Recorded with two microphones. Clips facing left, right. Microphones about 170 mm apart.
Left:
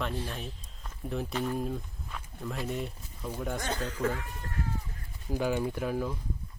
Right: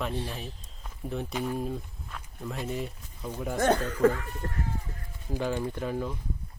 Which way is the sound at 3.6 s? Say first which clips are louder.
Right 11 dB; 55° right (ahead or behind).